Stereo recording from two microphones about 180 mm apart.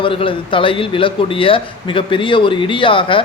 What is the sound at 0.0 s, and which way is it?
A man's voice, 30° left (ahead or behind).